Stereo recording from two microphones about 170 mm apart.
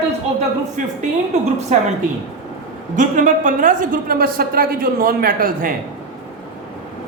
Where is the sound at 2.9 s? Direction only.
50° right (ahead or behind).